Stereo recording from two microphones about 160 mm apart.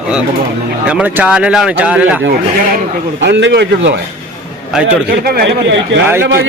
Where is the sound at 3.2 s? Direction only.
90° right.